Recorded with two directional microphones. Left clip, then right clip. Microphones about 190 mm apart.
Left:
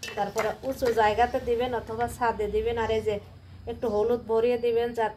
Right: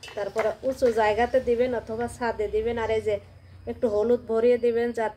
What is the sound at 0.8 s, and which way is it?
A woman's voice, 25° right (ahead or behind).